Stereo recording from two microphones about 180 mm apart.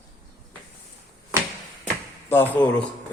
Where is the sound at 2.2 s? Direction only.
10° left (ahead or behind).